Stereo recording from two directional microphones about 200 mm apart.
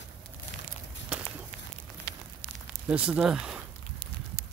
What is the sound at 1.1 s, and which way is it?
Walk, 5° right (ahead or behind).